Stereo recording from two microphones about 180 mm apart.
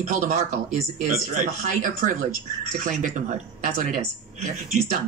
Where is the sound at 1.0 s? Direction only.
45° right (ahead or behind).